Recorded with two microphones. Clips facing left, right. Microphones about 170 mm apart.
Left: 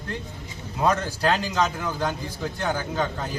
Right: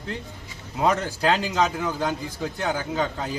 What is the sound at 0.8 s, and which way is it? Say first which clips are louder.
A man's voice: right 1 dB; 20° right (ahead or behind).